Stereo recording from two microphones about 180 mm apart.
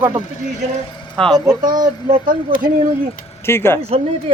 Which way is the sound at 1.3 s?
20° right (ahead or behind).